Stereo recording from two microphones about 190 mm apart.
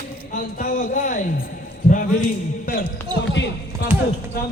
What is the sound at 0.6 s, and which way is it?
Music, 45° left (ahead or behind).